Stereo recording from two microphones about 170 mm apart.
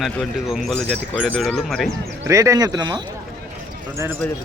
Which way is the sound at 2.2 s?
20° right (ahead or behind).